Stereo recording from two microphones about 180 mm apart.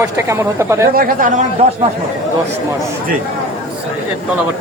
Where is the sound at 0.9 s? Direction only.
55° right (ahead or behind).